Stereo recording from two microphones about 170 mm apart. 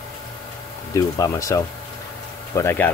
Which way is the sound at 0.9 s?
20° left (ahead or behind).